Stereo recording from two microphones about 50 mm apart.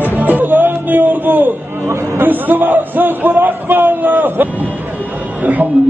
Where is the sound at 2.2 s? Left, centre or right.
Right.